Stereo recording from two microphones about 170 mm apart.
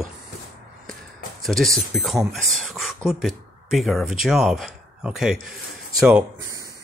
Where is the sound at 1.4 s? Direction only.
Centre (ahead or behind); by 6.8 s 20° right (ahead or behind).